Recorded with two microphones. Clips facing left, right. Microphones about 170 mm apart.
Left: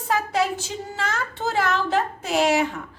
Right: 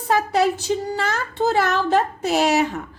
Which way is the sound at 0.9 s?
35° right (ahead or behind).